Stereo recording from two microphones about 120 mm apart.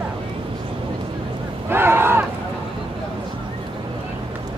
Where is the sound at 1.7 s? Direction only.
20° right (ahead or behind).